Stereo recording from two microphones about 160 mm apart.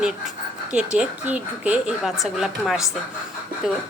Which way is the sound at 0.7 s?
5° right (ahead or behind).